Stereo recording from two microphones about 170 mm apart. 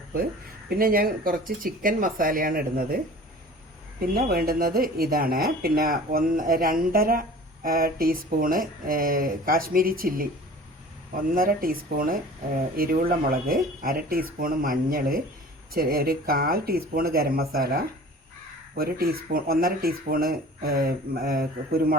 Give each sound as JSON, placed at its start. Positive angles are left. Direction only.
{"t": 0.7, "sound": "speech", "side_deg": -60}
{"t": 4.0, "sound": "speech", "side_deg": -60}